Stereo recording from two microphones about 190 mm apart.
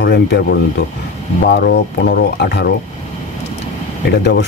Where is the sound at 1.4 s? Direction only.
60° left (ahead or behind).